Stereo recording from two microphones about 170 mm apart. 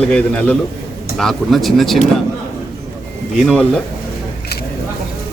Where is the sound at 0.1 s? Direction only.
5° left (ahead or behind).